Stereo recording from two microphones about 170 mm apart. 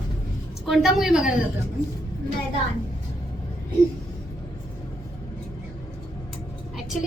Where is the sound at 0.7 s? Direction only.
Centre (ahead or behind).